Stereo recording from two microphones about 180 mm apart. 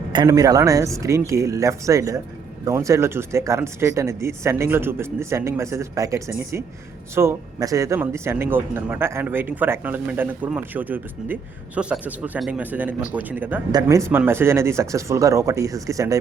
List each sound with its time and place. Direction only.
0.1 s a man's voice: 20° right (ahead or behind)